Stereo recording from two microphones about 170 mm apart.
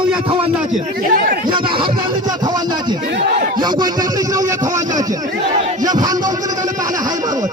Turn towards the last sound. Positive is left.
turn(degrees=-20)  # may be behind; listen again after turning